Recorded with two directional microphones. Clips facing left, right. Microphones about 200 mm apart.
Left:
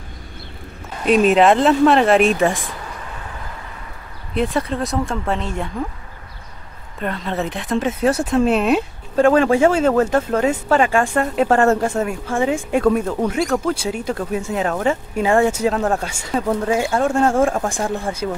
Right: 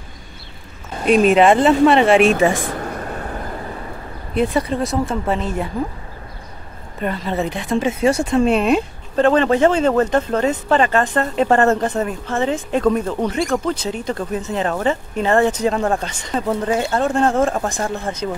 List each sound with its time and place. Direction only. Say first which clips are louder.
1.0 s speech: right 1 dB; centre (ahead or behind)
2.5 s a sound: right 6 dB; 50° right (ahead or behind)
4.3 s speech: right 2 dB; centre (ahead or behind)
7.0 s speech: right 2 dB; 5° right (ahead or behind)